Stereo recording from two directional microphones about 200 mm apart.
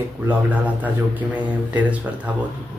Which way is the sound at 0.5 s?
10° right (ahead or behind).